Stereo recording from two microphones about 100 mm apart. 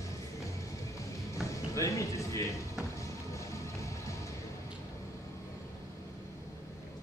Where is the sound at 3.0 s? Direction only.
30° left (ahead or behind).